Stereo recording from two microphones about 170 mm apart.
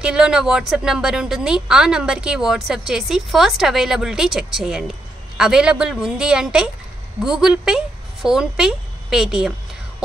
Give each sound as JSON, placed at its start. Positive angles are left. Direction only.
{"t": 0.0, "sound": "a woman's voice", "side_deg": -5}